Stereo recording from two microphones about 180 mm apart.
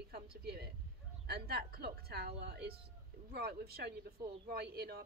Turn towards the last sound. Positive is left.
turn(degrees=-60)  # may be behind; listen again after turning